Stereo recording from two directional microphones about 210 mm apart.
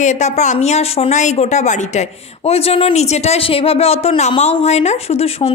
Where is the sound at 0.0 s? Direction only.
35° left (ahead or behind).